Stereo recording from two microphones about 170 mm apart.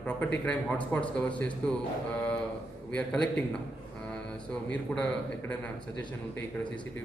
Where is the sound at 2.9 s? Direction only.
5° left (ahead or behind).